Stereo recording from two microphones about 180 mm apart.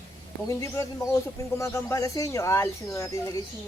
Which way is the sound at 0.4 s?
15° left (ahead or behind).